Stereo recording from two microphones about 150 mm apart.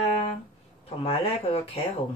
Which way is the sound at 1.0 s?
40° left (ahead or behind).